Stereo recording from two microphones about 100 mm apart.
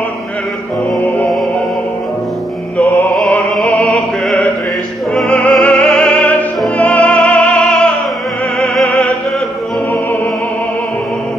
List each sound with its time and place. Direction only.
2.8 s music: 20° left (ahead or behind)
3.2 s opera: 15° left (ahead or behind)
3.6 s music: 10° left (ahead or behind)
5.1 s opera: 10° left (ahead or behind)